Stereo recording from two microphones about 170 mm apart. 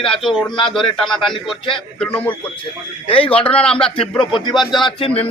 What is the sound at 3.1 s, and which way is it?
Speech, 35° left (ahead or behind).